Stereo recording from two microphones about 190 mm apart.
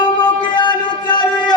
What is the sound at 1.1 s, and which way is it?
Music, 25° left (ahead or behind).